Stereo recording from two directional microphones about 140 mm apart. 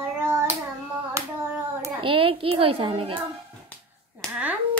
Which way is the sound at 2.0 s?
40° right (ahead or behind).